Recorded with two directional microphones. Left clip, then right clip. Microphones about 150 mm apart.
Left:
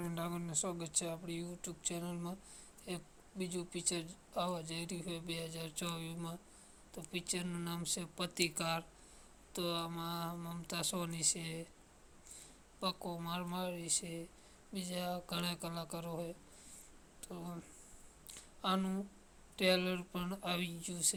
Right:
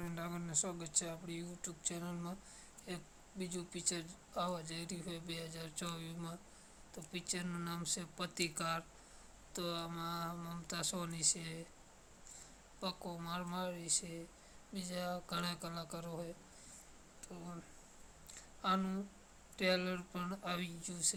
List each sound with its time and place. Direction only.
0.0 s speech: 20° left (ahead or behind)
12.8 s speech: 15° left (ahead or behind)
18.3 s a sound: 15° left (ahead or behind)
19.5 s speech: 20° left (ahead or behind)